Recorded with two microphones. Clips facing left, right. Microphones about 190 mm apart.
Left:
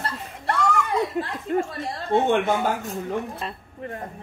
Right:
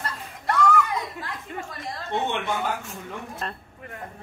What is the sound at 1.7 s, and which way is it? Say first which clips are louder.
A woman's voice: left 6 dB; 40° left (ahead or behind).